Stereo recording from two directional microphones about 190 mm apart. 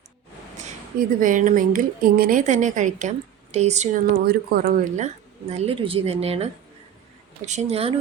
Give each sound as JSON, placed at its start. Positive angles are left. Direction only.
{"t": 0.5, "sound": "speech", "side_deg": -40}
{"t": 4.9, "sound": "speech", "side_deg": -35}